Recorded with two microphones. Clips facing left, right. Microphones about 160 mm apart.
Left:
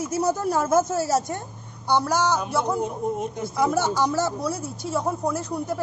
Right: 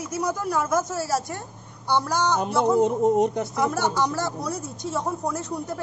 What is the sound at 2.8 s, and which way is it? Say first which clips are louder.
Speech: right 7 dB; 75° right (ahead or behind).